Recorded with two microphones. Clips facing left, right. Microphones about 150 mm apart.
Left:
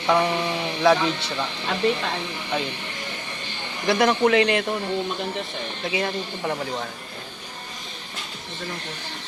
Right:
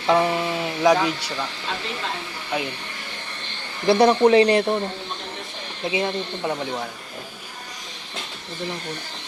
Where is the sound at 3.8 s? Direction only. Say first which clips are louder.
Right 4 dB; 30° right (ahead or behind).